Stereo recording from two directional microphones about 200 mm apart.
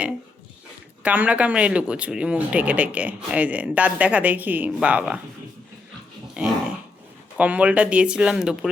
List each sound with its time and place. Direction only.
1.0 s speech: 5° right (ahead or behind)
6.3 s dog: 5° right (ahead or behind)
7.3 s speech: 5° right (ahead or behind)